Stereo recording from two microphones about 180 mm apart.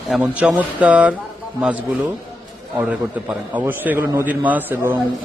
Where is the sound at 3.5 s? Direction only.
10° right (ahead or behind).